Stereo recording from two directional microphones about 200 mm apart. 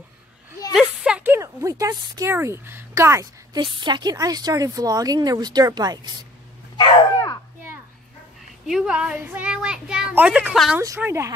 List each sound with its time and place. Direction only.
0.7 s speech: 5° right (ahead or behind)
6.8 s dog: 20° left (ahead or behind)
8.6 s speech: 5° right (ahead or behind)
10.8 s speech: 15° right (ahead or behind)